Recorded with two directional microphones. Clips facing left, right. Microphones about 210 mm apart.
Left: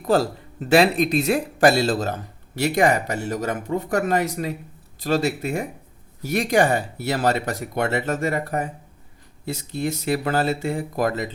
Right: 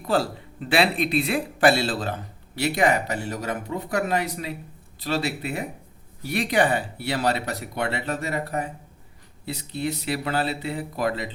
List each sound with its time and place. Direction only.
0.1 s speech: 45° left (ahead or behind)